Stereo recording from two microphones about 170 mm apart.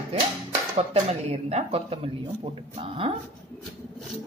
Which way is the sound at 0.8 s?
40° right (ahead or behind).